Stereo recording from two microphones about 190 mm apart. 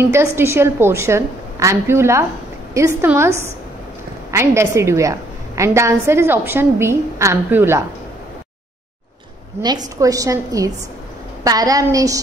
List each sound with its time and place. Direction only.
0.0 s a woman's voice: 10° right (ahead or behind)
9.6 s a woman's voice: 20° right (ahead or behind)